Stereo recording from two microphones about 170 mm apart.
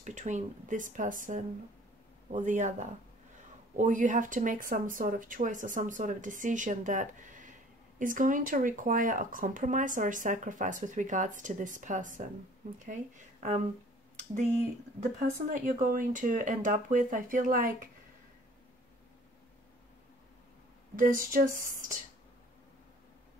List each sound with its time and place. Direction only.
0.0 s speech: 45° right (ahead or behind)
15.0 s speech: 50° right (ahead or behind)
20.9 s speech: 55° right (ahead or behind)